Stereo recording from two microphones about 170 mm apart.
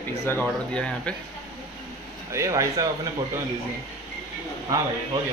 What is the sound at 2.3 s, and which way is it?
Speech, 20° right (ahead or behind).